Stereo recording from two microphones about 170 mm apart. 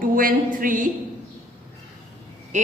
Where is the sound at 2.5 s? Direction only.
45° right (ahead or behind).